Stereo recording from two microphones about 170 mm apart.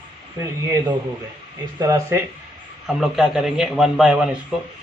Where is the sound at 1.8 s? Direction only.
15° right (ahead or behind).